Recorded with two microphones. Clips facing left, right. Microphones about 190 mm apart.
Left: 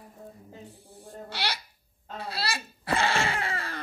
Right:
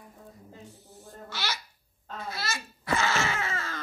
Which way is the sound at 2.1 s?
35° left (ahead or behind).